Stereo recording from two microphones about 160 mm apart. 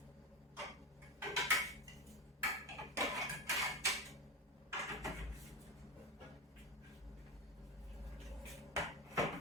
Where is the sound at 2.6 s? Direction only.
20° right (ahead or behind).